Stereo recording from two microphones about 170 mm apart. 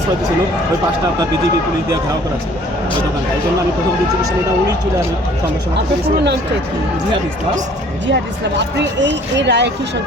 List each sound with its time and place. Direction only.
8.0 s speech: 90° right